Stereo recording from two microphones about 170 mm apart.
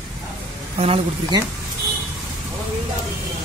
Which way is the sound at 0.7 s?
35° right (ahead or behind).